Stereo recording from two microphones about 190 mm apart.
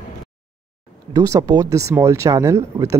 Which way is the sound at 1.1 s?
20° right (ahead or behind).